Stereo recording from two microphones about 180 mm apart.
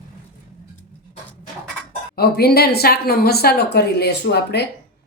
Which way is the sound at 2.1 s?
60° left (ahead or behind).